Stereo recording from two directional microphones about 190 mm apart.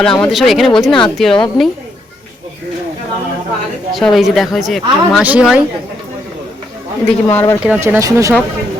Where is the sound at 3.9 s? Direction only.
Centre (ahead or behind).